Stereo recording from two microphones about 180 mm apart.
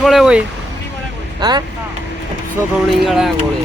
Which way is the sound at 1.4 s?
25° right (ahead or behind).